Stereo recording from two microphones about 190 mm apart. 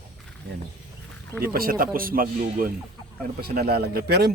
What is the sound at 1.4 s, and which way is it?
Speech, 50° right (ahead or behind).